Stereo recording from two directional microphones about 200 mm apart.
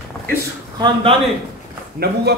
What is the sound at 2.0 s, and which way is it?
Speech, 50° right (ahead or behind).